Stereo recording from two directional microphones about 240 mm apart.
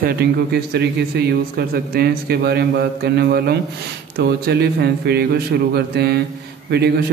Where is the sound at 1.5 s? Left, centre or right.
Right.